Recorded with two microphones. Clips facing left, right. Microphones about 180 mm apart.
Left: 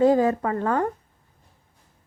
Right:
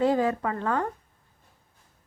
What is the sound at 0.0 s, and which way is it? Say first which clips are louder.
Speech: left 5 dB; 40° left (ahead or behind).